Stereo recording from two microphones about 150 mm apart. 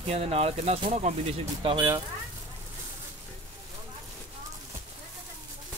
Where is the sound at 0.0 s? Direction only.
45° right (ahead or behind).